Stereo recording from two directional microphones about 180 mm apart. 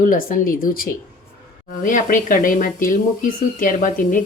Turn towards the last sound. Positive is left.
turn(degrees=45)  # may be behind; listen again after turning